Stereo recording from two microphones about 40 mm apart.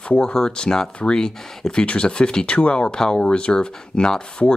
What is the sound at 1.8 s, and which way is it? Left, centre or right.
Speech, left.